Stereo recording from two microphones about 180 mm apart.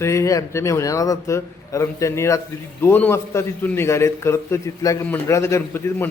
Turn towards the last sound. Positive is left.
turn(degrees=15)  # may be behind; listen again after turning